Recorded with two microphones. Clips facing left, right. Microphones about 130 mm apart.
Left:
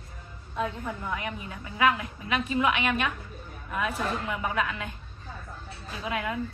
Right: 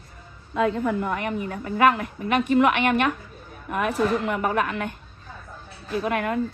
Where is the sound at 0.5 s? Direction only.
90° right; by 3.1 s 60° right (ahead or behind).